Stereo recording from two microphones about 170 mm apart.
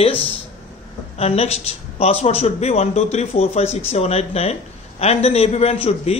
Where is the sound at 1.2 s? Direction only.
35° left (ahead or behind).